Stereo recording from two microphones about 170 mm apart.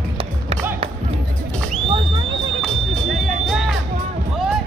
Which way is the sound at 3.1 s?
Centre (ahead or behind).